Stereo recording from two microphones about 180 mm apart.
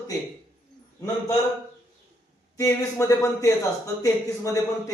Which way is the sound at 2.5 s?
20° left (ahead or behind).